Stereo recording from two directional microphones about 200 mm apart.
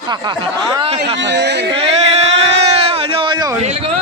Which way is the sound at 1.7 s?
30° right (ahead or behind).